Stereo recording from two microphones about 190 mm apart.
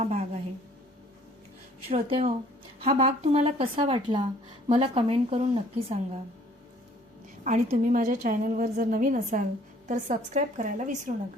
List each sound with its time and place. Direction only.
0.0 s a sound: 35° right (ahead or behind)
1.9 s a woman's voice: 30° right (ahead or behind)
7.4 s a woman's voice: 40° right (ahead or behind)